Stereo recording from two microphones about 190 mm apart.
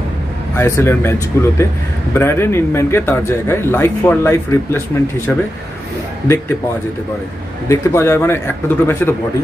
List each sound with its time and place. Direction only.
0.6 s speech: 15° left (ahead or behind)
7.6 s speech: 15° left (ahead or behind)